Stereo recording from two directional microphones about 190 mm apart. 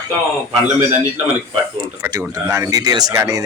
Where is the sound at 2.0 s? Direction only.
15° right (ahead or behind).